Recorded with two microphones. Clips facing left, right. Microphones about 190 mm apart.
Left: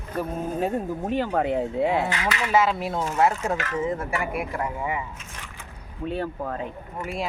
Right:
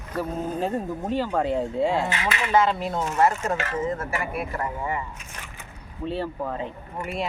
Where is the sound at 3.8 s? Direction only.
15° left (ahead or behind).